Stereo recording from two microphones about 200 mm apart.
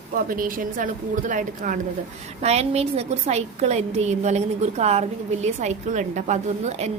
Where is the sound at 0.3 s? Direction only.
45° right (ahead or behind).